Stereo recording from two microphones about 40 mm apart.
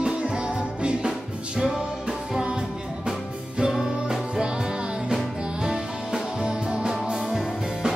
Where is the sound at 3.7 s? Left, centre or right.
Centre.